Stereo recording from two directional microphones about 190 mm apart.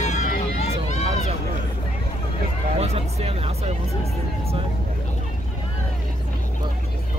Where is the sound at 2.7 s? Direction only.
35° right (ahead or behind).